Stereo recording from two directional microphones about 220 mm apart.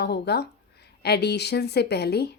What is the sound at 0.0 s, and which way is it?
A woman's voice, 50° left (ahead or behind).